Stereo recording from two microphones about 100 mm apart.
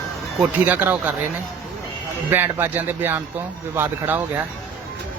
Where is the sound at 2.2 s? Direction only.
20° right (ahead or behind).